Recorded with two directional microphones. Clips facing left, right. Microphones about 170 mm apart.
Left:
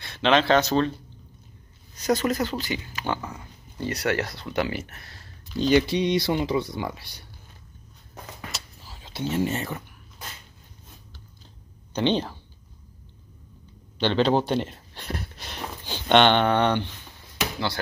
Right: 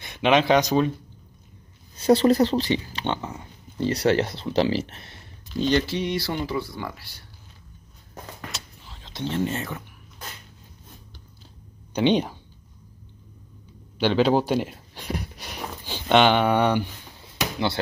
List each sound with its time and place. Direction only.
0.0 s speech: 15° right (ahead or behind)
2.0 s speech: 30° right (ahead or behind)
5.6 s speech: 10° left (ahead or behind)
8.1 s a sound: centre (ahead or behind)
11.9 s speech: 10° right (ahead or behind)
13.9 s a sound: 10° right (ahead or behind)